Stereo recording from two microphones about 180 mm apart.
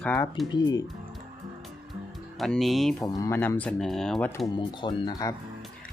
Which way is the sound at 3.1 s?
15° left (ahead or behind).